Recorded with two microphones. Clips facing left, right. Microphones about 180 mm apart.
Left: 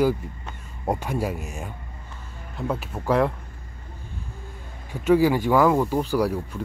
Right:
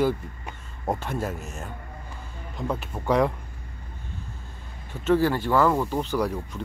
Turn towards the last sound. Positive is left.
turn(degrees=10)  # may be behind; listen again after turning